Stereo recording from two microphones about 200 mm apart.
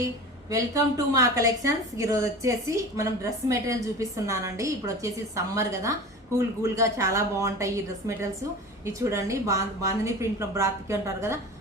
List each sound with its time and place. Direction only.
0.5 s a woman's voice: 15° right (ahead or behind)